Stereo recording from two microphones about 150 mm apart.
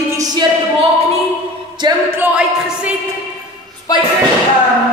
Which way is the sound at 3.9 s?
25° left (ahead or behind).